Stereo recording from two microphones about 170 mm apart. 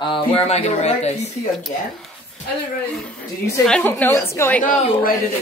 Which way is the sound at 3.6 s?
5° left (ahead or behind).